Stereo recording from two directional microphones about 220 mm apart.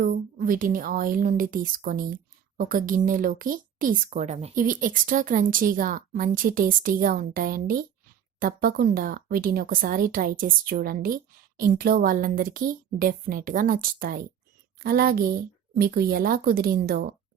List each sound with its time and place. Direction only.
0.0 s a woman's voice: 40° right (ahead or behind)